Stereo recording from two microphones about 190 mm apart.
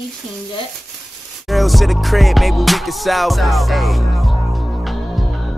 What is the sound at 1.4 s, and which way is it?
Music, centre (ahead or behind).